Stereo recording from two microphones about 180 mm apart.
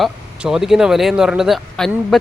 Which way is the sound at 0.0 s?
Centre (ahead or behind).